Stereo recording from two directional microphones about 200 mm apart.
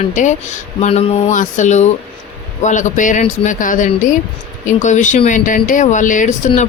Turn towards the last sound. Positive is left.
turn(degrees=40)  # may be behind; listen again after turning